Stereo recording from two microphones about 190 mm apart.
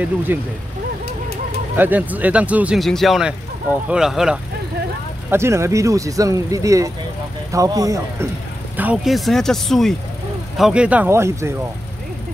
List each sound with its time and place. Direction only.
0.3 s speech: 10° right (ahead or behind)
1.8 s speech: 10° right (ahead or behind)
5.3 s speech: 15° right (ahead or behind)
8.7 s speech: 5° right (ahead or behind)